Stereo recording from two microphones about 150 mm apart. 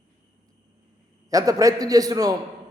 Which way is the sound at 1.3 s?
20° right (ahead or behind).